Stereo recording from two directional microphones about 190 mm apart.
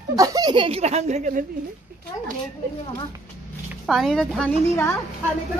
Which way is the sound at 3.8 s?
Centre (ahead or behind).